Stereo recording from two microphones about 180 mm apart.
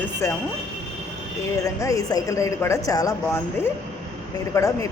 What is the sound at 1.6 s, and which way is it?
A woman's voice, 20° left (ahead or behind).